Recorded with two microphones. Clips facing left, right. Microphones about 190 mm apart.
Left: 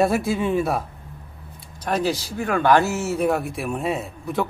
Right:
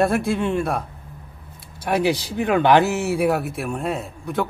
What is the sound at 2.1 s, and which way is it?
Speech, 20° right (ahead or behind).